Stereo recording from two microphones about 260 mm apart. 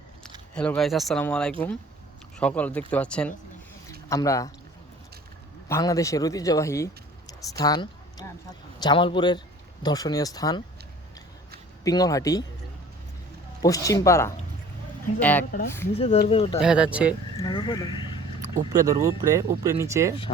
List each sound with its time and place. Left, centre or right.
0.5 s speech: centre
5.6 s speech: centre
11.8 s speech: centre
13.6 s speech: centre
16.1 s speech: left
16.6 s speech: centre
17.3 s speech: centre
18.4 s speech: centre